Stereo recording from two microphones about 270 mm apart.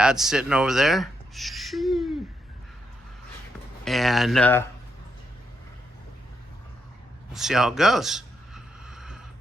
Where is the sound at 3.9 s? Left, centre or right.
Centre.